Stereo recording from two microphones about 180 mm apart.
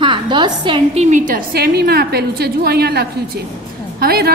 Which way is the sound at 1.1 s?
45° right (ahead or behind).